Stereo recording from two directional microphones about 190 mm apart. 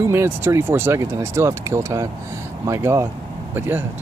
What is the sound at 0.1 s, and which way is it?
Speech, 15° right (ahead or behind).